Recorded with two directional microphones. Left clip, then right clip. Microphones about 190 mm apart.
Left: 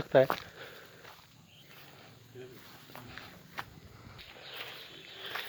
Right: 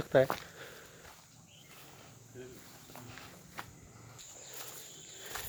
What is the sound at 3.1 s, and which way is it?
Walk, 15° right (ahead or behind).